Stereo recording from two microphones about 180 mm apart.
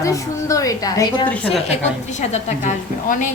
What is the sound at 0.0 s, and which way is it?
A woman's voice, 20° left (ahead or behind).